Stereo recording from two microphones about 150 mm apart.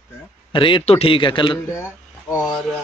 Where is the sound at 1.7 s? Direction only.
15° left (ahead or behind).